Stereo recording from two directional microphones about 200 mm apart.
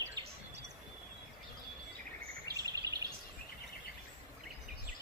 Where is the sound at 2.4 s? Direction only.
15° right (ahead or behind).